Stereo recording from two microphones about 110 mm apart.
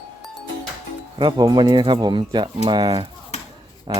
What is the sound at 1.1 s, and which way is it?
Speech, 40° right (ahead or behind).